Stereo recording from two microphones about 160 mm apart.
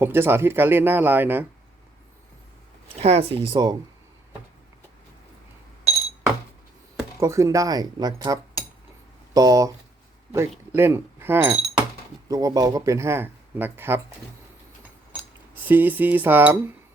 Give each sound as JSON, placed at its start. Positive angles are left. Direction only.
{"t": 0.0, "sound": "speech", "side_deg": -15}
{"t": 3.0, "sound": "speech", "side_deg": -40}
{"t": 7.2, "sound": "speech", "side_deg": -20}
{"t": 12.3, "sound": "speech", "side_deg": -20}
{"t": 15.6, "sound": "speech", "side_deg": -10}